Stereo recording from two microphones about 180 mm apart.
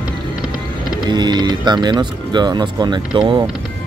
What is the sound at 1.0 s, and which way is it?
Speech, 25° right (ahead or behind).